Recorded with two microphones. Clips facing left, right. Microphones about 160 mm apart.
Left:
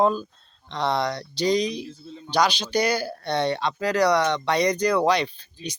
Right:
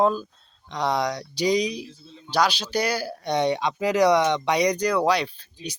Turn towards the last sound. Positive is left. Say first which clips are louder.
# left 1 dB
turn(degrees=-5)  # may be behind; listen again after turning